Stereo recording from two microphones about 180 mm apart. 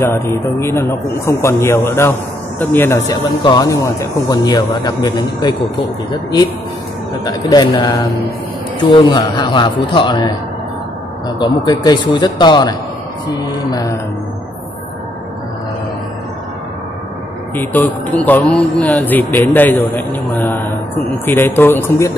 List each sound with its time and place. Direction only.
0.0 s a man's voice: 15° left (ahead or behind)
7.2 s a man's voice: 20° left (ahead or behind)
17.6 s speech: 10° left (ahead or behind)